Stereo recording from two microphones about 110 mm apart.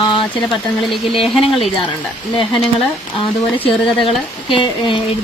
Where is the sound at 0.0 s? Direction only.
50° left (ahead or behind).